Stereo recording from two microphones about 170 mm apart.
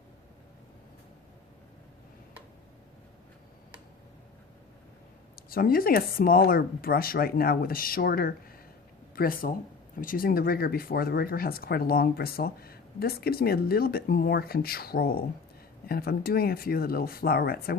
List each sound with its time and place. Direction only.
5.5 s speech: 60° left (ahead or behind)